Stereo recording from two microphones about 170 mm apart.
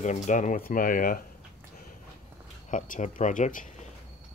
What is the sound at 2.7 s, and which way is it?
Speech, 50° left (ahead or behind).